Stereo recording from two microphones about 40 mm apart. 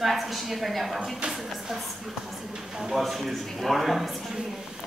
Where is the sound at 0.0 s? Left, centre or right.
Centre.